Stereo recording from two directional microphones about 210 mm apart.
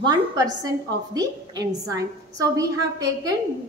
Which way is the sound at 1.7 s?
15° right (ahead or behind).